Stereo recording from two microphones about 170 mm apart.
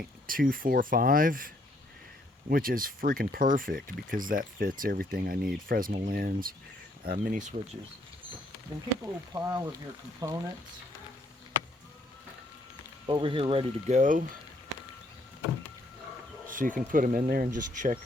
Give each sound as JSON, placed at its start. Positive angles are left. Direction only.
{"t": 0.3, "sound": "speech", "side_deg": -55}
{"t": 9.3, "sound": "speech", "side_deg": -20}
{"t": 13.1, "sound": "speech", "side_deg": -30}
{"t": 16.5, "sound": "speech", "side_deg": -50}